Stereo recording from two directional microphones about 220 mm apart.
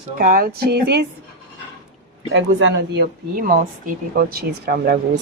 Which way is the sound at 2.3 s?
55° right (ahead or behind).